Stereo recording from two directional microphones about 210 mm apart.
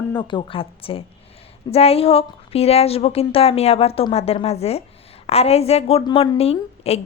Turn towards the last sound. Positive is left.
turn(degrees=30)  # may be behind; listen again after turning